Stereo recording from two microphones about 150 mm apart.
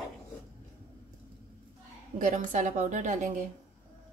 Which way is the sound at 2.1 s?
60° right (ahead or behind).